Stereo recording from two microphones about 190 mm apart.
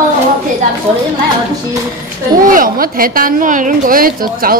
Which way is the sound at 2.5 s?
45° right (ahead or behind).